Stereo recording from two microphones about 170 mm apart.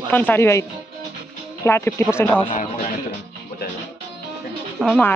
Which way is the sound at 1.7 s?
15° left (ahead or behind).